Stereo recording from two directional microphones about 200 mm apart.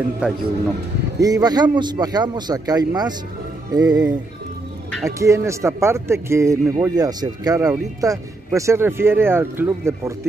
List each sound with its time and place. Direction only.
0.2 s a man's voice: 5° right (ahead or behind)
1.2 s a man's voice: 20° right (ahead or behind)
5.0 s speech: 15° right (ahead or behind)